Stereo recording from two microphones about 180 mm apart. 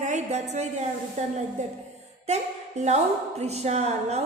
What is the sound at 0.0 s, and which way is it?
A woman's voice, 40° right (ahead or behind).